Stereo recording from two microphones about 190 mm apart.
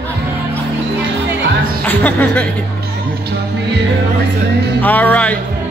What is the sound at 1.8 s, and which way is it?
Speech, 10° left (ahead or behind).